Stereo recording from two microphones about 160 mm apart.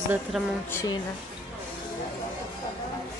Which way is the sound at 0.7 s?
20° left (ahead or behind).